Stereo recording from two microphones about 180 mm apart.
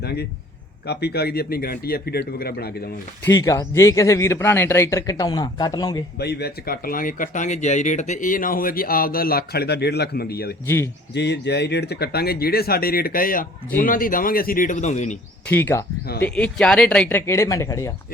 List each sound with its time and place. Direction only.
0.0 s a sound: 65° left (ahead or behind)
0.9 s speech: 65° left (ahead or behind)
3.2 s speech: 15° left (ahead or behind)
6.1 s speech: 65° left (ahead or behind)
11.1 s speech: 70° left (ahead or behind); by 15.2 s 40° left (ahead or behind)
15.4 s speech: 10° left (ahead or behind)